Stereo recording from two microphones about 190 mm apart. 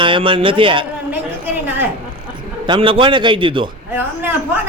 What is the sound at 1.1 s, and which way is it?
Speech, 10° right (ahead or behind).